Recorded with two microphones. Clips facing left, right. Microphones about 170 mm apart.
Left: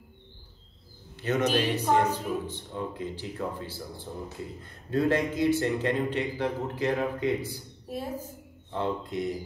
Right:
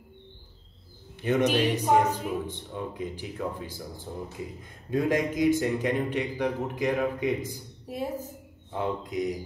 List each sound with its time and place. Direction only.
1.2 s a man's voice: 15° right (ahead or behind)